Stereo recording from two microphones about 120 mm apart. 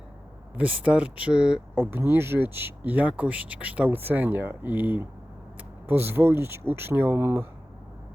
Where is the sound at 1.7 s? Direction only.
20° right (ahead or behind).